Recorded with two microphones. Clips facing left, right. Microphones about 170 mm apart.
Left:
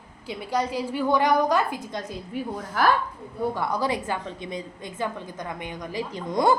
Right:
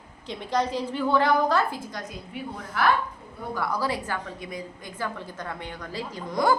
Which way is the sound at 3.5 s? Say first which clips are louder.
Right 2 dB; 20° left (ahead or behind).